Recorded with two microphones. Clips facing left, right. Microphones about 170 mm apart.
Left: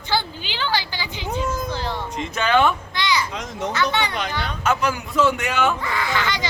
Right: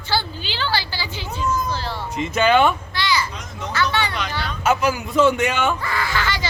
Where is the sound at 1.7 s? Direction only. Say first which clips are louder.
Left 1 dB; 20° left (ahead or behind).